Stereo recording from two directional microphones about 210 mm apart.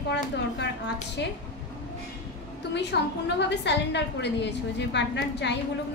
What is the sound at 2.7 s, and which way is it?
A woman's voice, 55° left (ahead or behind).